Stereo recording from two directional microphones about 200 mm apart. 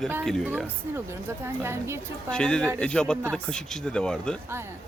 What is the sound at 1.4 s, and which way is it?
Speech, 15° right (ahead or behind).